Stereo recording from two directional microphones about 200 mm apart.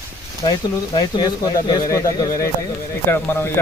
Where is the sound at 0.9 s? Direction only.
20° left (ahead or behind).